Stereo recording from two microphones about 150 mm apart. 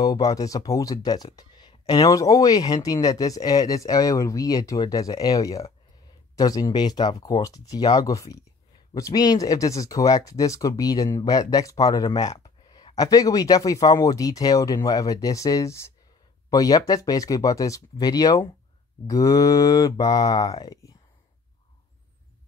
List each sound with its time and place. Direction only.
0.0 s speech: 25° left (ahead or behind)